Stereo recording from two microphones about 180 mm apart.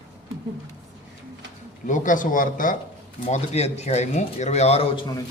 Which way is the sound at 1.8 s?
45° left (ahead or behind).